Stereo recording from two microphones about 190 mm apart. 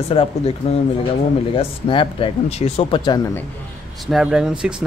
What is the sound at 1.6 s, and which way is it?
Speech, 25° left (ahead or behind).